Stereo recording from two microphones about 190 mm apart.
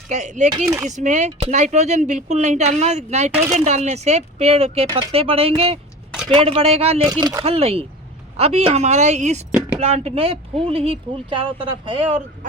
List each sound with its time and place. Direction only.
0.1 s speech: 40° right (ahead or behind)
0.5 s speech: 15° right (ahead or behind)
0.9 s speech: 40° right (ahead or behind)
7.1 s speech: 20° right (ahead or behind)